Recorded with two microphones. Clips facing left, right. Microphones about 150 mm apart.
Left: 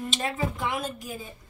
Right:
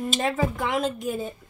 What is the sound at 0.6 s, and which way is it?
Speech, 90° right.